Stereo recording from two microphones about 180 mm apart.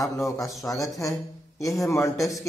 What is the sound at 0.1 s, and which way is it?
A man's voice, 20° left (ahead or behind).